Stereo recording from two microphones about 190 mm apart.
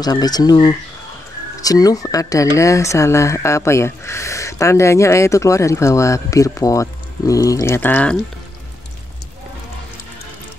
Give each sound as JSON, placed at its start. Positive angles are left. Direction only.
{"t": 0.0, "sound": "speech", "side_deg": 20}